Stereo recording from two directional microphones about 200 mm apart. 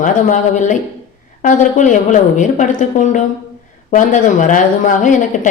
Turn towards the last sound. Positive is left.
turn(degrees=40)  # may be behind; listen again after turning